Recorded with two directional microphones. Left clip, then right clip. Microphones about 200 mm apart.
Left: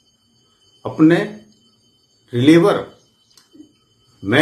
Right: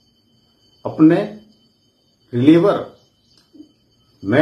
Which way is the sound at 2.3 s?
5° left (ahead or behind).